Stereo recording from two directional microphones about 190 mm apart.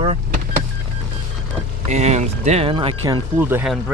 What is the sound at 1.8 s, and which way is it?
Speech, 35° right (ahead or behind).